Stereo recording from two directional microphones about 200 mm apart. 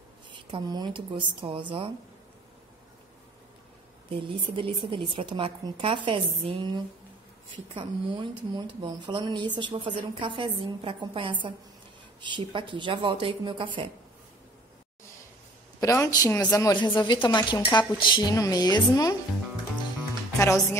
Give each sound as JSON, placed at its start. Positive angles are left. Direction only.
{"t": 0.3, "sound": "speech", "side_deg": -25}
{"t": 4.1, "sound": "speech", "side_deg": -25}
{"t": 15.8, "sound": "a woman's voice", "side_deg": 15}
{"t": 20.3, "sound": "a woman's voice", "side_deg": 15}